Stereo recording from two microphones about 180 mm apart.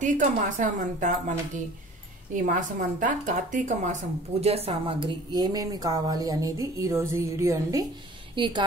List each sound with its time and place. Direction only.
0.0 s a woman's voice: 45° right (ahead or behind)
2.3 s a woman's voice: 45° right (ahead or behind); by 7.8 s 15° right (ahead or behind)
8.4 s a woman's voice: 30° right (ahead or behind)